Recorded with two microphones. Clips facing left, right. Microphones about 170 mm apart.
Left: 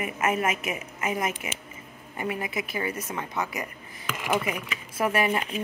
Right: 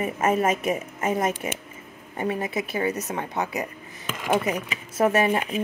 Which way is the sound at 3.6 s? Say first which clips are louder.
Right 4 dB; 30° right (ahead or behind).